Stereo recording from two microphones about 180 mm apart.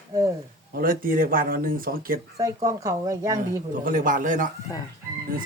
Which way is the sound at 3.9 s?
50° right (ahead or behind).